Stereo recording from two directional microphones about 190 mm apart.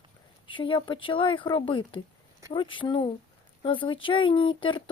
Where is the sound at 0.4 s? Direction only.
25° left (ahead or behind).